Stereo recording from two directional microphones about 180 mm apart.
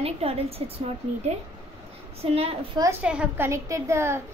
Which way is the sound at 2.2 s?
35° right (ahead or behind).